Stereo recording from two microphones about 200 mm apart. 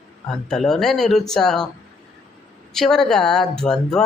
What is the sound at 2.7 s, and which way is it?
Speech, centre (ahead or behind).